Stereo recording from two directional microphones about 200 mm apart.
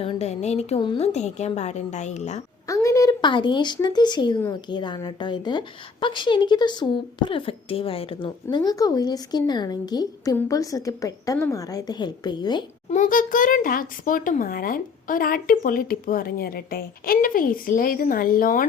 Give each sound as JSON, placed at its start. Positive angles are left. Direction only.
{"t": 0.0, "sound": "a woman's voice", "side_deg": 30}
{"t": 2.6, "sound": "a woman's voice", "side_deg": 15}
{"t": 12.9, "sound": "a child's voice", "side_deg": 40}